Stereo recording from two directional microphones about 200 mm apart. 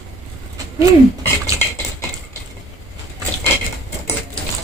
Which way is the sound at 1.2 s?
10° left (ahead or behind).